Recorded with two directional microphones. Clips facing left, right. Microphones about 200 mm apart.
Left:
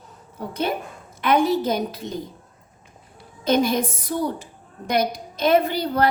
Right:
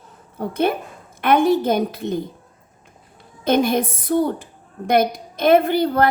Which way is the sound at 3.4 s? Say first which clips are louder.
Right 2 dB; 55° right (ahead or behind).